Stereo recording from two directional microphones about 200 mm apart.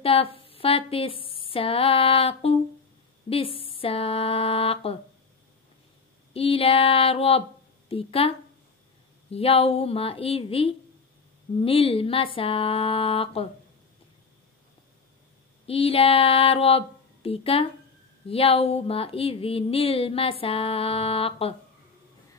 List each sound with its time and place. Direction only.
0.0 s a woman's voice: 30° left (ahead or behind)
6.3 s speech: 30° left (ahead or behind)
15.6 s speech: 30° left (ahead or behind)